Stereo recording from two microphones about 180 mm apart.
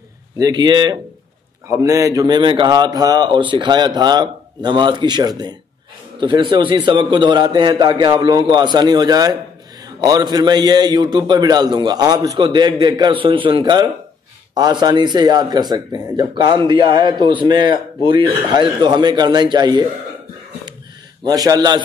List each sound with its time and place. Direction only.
0.4 s a man's voice: 25° right (ahead or behind)
21.2 s a man's voice: 20° right (ahead or behind)